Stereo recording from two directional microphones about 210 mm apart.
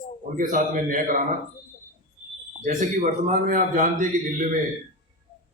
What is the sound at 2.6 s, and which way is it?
A man's voice, 35° right (ahead or behind).